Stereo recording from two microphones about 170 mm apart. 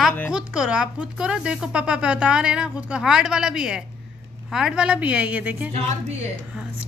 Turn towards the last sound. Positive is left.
turn(degrees=-10)  # may be behind; listen again after turning